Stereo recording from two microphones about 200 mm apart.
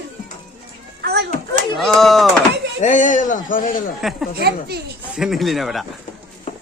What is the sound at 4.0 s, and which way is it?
Speech, centre (ahead or behind).